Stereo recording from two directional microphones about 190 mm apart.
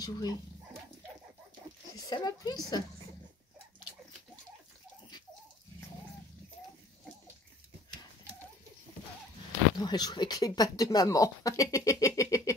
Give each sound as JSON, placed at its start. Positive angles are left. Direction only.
{"t": 0.0, "sound": "speech", "side_deg": 20}
{"t": 2.0, "sound": "speech", "side_deg": 20}
{"t": 9.8, "sound": "speech", "side_deg": 20}
{"t": 12.2, "sound": "a sound", "side_deg": 15}